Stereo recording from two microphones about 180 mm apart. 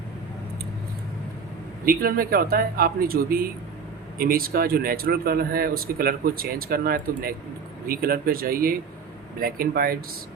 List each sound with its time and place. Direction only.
1.8 s speech: 55° right (ahead or behind)